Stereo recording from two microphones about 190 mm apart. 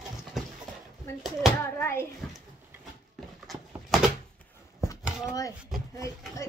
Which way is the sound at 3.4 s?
Centre (ahead or behind).